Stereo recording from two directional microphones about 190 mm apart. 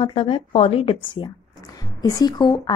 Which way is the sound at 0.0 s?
25° left (ahead or behind).